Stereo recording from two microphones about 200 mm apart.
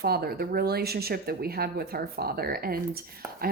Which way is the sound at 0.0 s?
50° right (ahead or behind).